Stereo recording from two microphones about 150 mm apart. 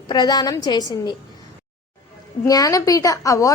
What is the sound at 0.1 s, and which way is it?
Speech, 25° left (ahead or behind).